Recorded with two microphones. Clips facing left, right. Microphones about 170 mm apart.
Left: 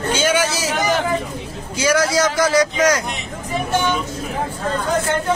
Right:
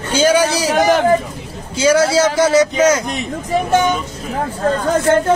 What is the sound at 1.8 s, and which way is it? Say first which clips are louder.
A man's voice: right 5 dB; 30° right (ahead or behind).